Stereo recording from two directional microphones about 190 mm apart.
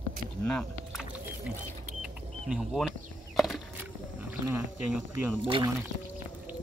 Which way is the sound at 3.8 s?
10° right (ahead or behind).